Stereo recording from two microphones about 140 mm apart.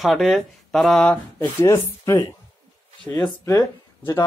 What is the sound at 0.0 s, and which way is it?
Speech, centre (ahead or behind).